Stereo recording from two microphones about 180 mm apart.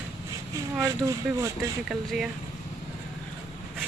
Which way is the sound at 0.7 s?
15° right (ahead or behind).